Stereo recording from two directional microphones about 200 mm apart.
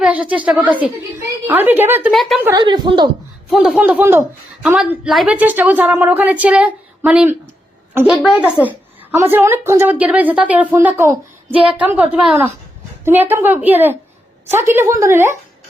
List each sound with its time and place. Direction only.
0.0 s a woman's voice: 5° right (ahead or behind)
2.4 s a woman's voice: 20° right (ahead or behind)
3.5 s a woman's voice: centre (ahead or behind)